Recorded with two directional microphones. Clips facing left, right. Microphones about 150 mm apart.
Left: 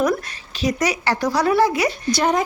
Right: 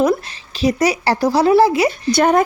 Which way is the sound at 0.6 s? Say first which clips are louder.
Right 5 dB; 30° right (ahead or behind).